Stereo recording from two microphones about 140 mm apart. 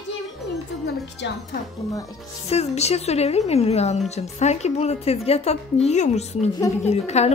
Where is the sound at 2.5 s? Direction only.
50° left (ahead or behind).